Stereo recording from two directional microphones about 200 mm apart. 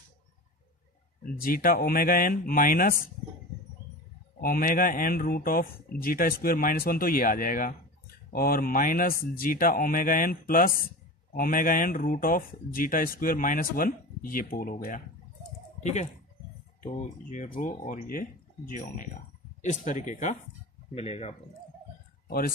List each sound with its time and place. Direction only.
1.4 s speech: 45° left (ahead or behind)
4.4 s speech: 45° left (ahead or behind); by 21.4 s 30° left (ahead or behind)